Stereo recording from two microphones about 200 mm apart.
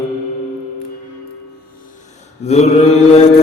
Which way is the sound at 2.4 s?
30° left (ahead or behind).